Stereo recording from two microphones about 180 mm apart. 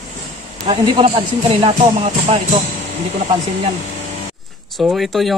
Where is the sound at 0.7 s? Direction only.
30° right (ahead or behind).